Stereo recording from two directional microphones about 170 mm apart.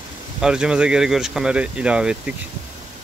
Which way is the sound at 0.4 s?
5° right (ahead or behind).